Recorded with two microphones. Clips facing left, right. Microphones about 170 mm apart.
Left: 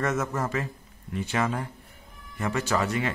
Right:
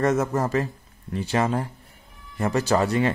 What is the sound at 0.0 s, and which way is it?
Speech, 35° right (ahead or behind).